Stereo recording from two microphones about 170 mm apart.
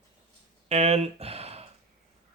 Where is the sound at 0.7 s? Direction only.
35° right (ahead or behind).